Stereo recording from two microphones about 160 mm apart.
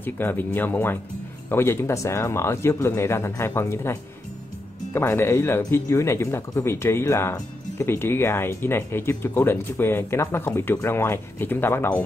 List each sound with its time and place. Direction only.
0.0 s speech: 15° left (ahead or behind)